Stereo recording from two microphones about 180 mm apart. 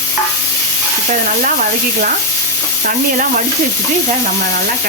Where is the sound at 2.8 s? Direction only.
50° right (ahead or behind).